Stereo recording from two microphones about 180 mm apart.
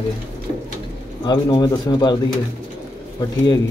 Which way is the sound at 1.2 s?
25° left (ahead or behind).